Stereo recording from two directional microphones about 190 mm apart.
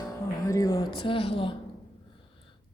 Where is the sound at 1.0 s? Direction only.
30° left (ahead or behind).